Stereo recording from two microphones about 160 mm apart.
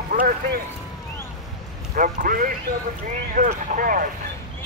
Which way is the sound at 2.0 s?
55° right (ahead or behind).